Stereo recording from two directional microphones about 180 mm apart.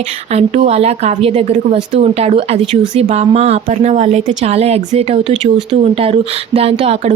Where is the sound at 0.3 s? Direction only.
35° right (ahead or behind).